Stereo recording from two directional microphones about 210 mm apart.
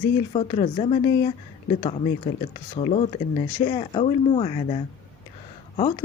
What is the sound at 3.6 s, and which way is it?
Speech, 25° left (ahead or behind).